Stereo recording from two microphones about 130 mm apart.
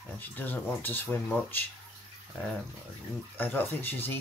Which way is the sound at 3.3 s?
15° left (ahead or behind).